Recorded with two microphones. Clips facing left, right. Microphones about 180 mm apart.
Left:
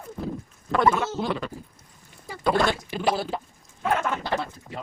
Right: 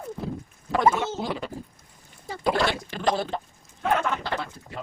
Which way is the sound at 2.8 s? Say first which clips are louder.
Even; 10° left (ahead or behind).